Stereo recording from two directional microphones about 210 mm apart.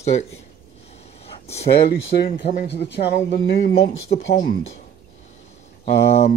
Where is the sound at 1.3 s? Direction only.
30° left (ahead or behind).